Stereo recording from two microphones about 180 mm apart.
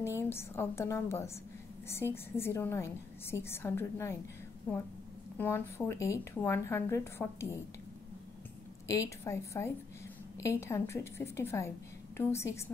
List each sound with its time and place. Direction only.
0.3 s speech: 15° left (ahead or behind)
8.8 s speech: 15° left (ahead or behind)